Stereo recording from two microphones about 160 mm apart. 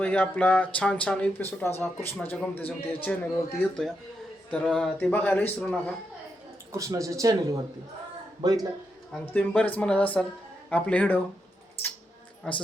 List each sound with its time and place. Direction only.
0.0 s speech: 10° left (ahead or behind)
6.7 s a man's voice: 20° right (ahead or behind)
9.2 s speech: 10° left (ahead or behind)
12.4 s speech: 5° left (ahead or behind)